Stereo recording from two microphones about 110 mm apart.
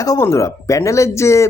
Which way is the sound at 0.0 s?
30° left (ahead or behind).